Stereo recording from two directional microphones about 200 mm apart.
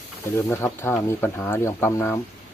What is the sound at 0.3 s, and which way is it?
Speech, 15° left (ahead or behind).